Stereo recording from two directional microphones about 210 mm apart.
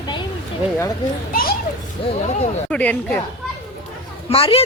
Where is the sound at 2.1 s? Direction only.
30° left (ahead or behind).